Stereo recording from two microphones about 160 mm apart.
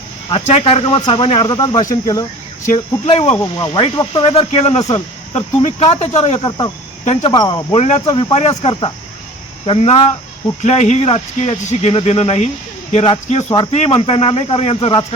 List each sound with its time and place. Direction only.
0.3 s speech: 35° left (ahead or behind); by 2.2 s 20° left (ahead or behind)
2.7 s speech: 35° left (ahead or behind)
4.8 s speech: 20° left (ahead or behind)
5.3 s speech: 45° left (ahead or behind)
7.3 s speech: 25° left (ahead or behind)
7.8 s speech: 45° left (ahead or behind)